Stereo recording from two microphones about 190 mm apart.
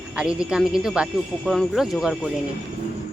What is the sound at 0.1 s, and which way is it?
Speech, 5° right (ahead or behind).